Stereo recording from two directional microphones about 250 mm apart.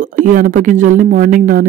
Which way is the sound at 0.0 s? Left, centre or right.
Right.